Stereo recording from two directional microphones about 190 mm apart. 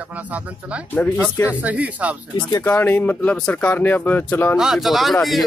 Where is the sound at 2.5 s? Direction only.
10° left (ahead or behind).